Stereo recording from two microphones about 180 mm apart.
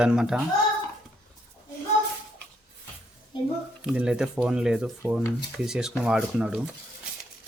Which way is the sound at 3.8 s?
5° right (ahead or behind).